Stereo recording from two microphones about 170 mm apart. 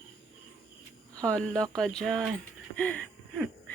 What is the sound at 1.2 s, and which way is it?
Speech, 5° left (ahead or behind).